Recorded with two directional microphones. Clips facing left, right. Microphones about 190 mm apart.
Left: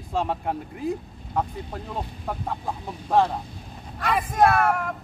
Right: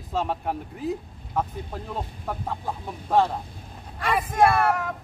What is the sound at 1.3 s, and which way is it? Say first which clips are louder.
Speech: left 1 dB; centre (ahead or behind).